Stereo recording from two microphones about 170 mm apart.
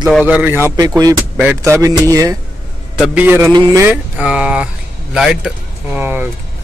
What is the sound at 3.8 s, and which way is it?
Speech, 10° right (ahead or behind).